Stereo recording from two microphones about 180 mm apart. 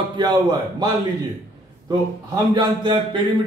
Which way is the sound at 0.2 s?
25° right (ahead or behind).